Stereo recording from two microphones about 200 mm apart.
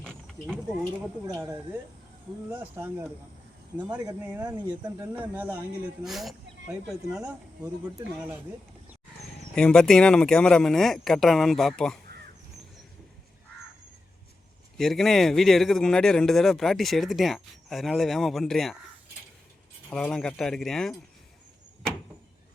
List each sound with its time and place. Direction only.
0.0 s mechanisms: 5° left (ahead or behind)
1.3 s speech: 15° right (ahead or behind)
3.8 s speech: 20° right (ahead or behind)
4.2 s speech: 10° right (ahead or behind)
9.6 s speech: 5° left (ahead or behind)
14.8 s speech: centre (ahead or behind)
19.9 s speech: 5° left (ahead or behind)